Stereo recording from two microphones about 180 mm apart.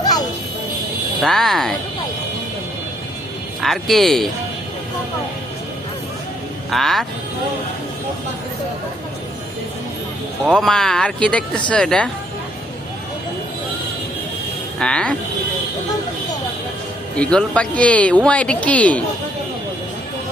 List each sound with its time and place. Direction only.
0.0 s music: 20° left (ahead or behind)
1.2 s speech: centre (ahead or behind)
3.6 s speech: centre (ahead or behind)
6.7 s speech: centre (ahead or behind)
10.4 s speech: centre (ahead or behind)
14.8 s speech: 5° left (ahead or behind)
17.2 s speech: 5° left (ahead or behind)